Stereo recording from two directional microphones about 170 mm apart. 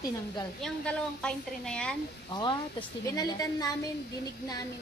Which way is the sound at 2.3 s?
25° left (ahead or behind).